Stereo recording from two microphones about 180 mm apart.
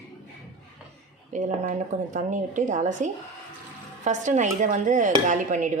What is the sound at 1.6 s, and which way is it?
Speech, 45° right (ahead or behind).